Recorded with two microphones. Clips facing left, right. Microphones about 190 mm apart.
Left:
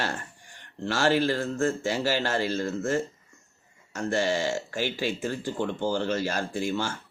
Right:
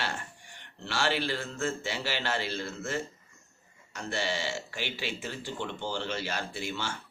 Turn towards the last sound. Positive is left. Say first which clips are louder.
# left 7 dB
turn(degrees=45)  # may be behind; listen again after turning